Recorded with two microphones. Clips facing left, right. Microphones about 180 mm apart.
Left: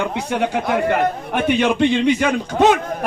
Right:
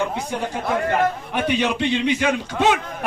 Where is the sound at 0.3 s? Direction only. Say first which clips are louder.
Left 6 dB; 70° left (ahead or behind).